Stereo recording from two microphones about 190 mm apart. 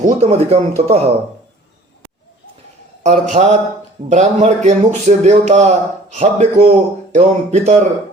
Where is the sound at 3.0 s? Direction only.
40° right (ahead or behind).